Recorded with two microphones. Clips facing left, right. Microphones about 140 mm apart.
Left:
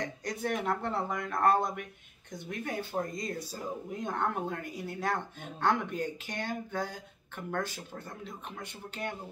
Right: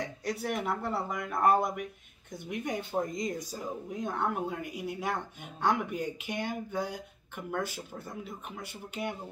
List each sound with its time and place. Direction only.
0.0 s speech: 5° right (ahead or behind)
3.9 s speech: 5° right (ahead or behind)